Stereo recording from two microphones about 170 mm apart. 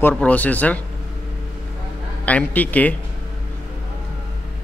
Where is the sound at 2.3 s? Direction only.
10° left (ahead or behind).